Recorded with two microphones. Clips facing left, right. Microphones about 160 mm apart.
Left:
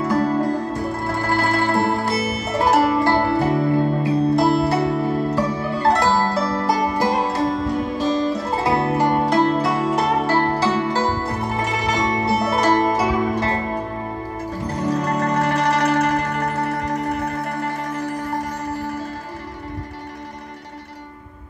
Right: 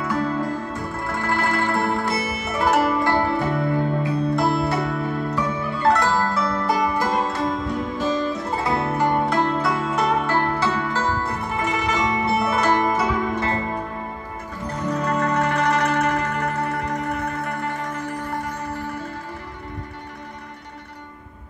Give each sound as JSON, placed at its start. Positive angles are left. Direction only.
{"t": 0.0, "sound": "music", "side_deg": 40}
{"t": 14.7, "sound": "music", "side_deg": 35}